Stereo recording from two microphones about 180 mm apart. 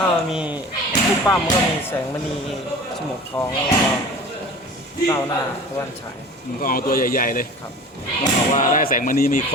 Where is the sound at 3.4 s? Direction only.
15° left (ahead or behind).